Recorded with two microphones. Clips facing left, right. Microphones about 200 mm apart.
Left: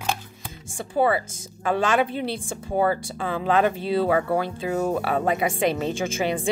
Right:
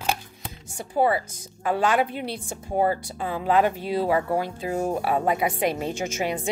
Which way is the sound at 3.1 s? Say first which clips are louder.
Left 2 dB; 90° left.